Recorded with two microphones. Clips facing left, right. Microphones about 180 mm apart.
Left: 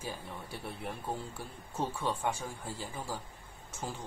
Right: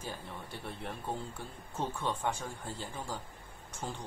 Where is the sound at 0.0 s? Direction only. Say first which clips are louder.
Left 1 dB; 5° left (ahead or behind).